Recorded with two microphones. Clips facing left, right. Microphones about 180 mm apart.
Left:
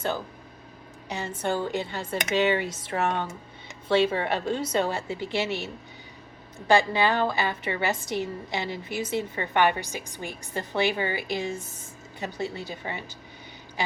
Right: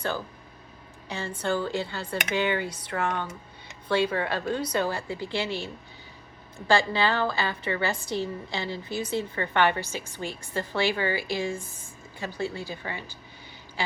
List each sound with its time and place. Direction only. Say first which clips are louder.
1.0 s a woman's voice: left 1 dB; 20° left (ahead or behind)